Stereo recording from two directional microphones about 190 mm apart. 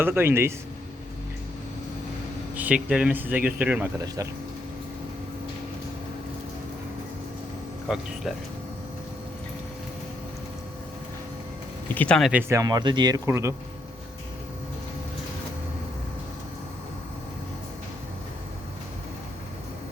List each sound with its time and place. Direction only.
0.0 s speech: 10° right (ahead or behind)
2.6 s speech: 5° right (ahead or behind)
4.0 s speech: 20° right (ahead or behind)
7.9 s speech: 5° right (ahead or behind)
11.9 s speech: 5° left (ahead or behind)
12.3 s speech: 10° right (ahead or behind)